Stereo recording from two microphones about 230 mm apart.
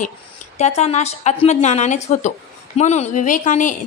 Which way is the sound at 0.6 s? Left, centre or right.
Left.